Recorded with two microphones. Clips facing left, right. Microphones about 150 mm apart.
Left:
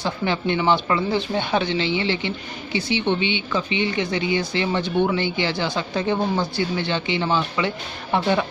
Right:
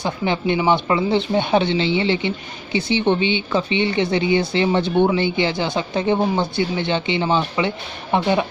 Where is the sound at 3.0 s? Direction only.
35° right (ahead or behind).